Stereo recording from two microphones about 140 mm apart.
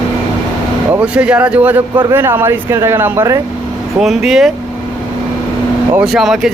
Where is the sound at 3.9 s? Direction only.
Centre (ahead or behind).